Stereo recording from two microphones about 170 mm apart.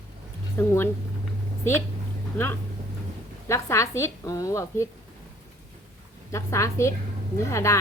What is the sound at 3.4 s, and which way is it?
Speech, 15° left (ahead or behind).